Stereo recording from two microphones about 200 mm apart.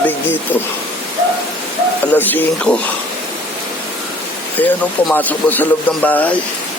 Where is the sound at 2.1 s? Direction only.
10° left (ahead or behind).